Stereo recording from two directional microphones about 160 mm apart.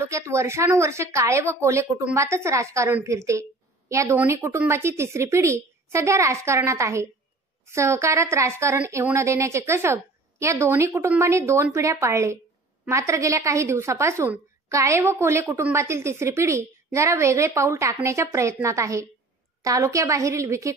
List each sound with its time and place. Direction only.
0.0 s a woman's voice: 15° right (ahead or behind)